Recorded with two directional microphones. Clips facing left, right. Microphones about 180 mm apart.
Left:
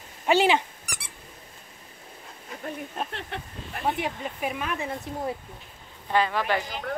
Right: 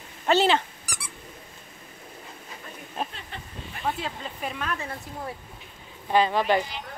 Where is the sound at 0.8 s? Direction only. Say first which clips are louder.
Right 1 dB; 60° left (ahead or behind).